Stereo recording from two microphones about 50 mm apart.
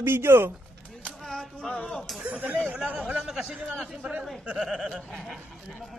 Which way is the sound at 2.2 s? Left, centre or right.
Right.